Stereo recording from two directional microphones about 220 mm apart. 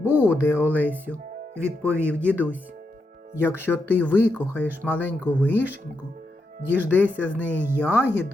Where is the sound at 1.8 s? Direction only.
10° right (ahead or behind).